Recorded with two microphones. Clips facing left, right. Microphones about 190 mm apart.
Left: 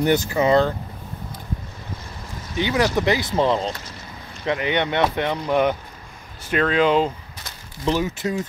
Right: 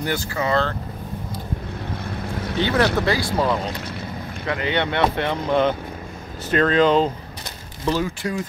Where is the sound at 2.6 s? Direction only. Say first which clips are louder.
Even; 15° left (ahead or behind).